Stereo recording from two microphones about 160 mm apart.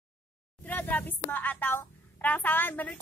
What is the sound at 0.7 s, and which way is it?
A woman's voice, 10° left (ahead or behind).